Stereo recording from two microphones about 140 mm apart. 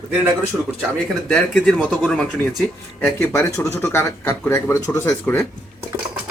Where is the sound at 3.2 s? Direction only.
20° left (ahead or behind).